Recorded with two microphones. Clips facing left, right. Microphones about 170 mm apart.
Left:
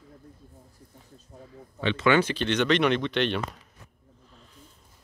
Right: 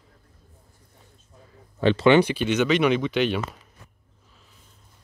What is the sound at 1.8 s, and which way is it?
Speech, 40° right (ahead or behind).